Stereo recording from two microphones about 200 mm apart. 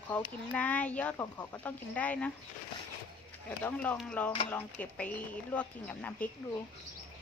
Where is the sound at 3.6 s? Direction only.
10° left (ahead or behind).